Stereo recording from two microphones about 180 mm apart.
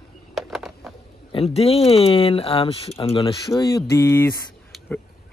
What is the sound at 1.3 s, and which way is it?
Speech, 35° left (ahead or behind).